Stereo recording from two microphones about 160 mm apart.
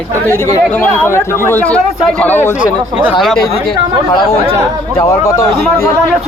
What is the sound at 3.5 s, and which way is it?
Speech, 30° left (ahead or behind).